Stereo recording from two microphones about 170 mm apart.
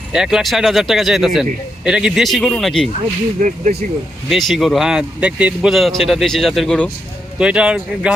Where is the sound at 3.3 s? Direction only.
50° right (ahead or behind).